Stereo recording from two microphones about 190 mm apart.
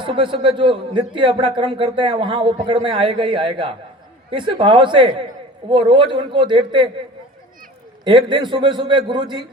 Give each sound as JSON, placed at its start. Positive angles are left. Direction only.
{"t": 0.0, "sound": "a man's voice", "side_deg": -25}
{"t": 8.0, "sound": "a man's voice", "side_deg": -25}